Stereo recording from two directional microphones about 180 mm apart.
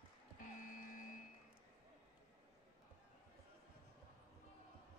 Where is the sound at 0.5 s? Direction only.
50° left (ahead or behind).